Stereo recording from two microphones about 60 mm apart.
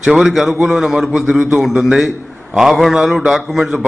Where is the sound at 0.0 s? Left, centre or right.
Centre.